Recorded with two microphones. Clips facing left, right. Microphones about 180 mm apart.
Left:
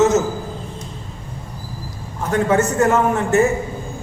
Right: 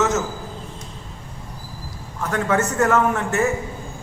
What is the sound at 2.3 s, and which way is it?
Speech, 20° left (ahead or behind).